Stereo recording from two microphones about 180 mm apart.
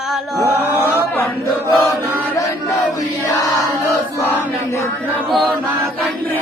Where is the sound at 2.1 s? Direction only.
10° right (ahead or behind).